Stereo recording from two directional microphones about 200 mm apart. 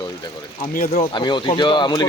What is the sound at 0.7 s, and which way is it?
Speech, 40° left (ahead or behind).